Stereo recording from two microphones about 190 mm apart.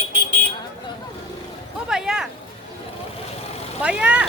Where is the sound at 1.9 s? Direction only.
5° right (ahead or behind).